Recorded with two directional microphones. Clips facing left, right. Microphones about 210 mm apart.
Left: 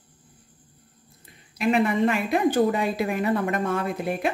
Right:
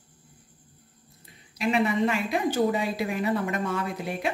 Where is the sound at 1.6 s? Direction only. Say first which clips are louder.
Left 3 dB; 55° left (ahead or behind).